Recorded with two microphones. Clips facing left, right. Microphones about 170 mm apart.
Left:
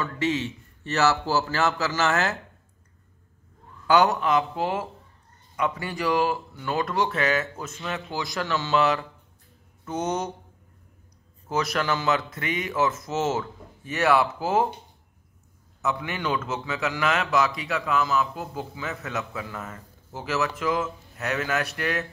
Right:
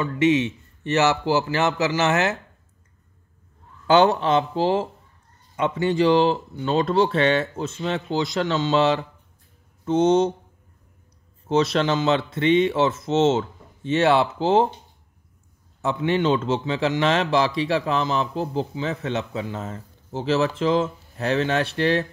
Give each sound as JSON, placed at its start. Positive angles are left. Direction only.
{"t": 0.0, "sound": "a man's voice", "side_deg": -20}
{"t": 3.8, "sound": "a man's voice", "side_deg": -25}
{"t": 11.4, "sound": "a man's voice", "side_deg": -25}
{"t": 15.8, "sound": "a man's voice", "side_deg": -30}